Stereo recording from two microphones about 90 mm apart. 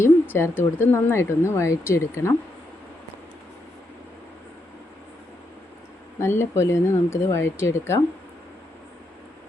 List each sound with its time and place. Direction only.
0.0 s speech: 25° left (ahead or behind)
6.1 s speech: 30° left (ahead or behind)